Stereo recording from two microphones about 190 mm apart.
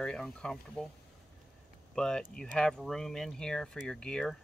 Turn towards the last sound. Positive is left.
turn(degrees=5)  # may be behind; listen again after turning